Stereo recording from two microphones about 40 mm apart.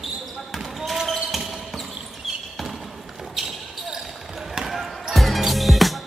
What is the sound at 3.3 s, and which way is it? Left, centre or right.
Basketball bounce, centre.